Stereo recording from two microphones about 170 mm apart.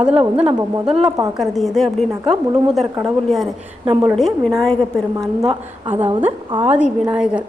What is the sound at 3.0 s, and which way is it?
Speech, centre (ahead or behind).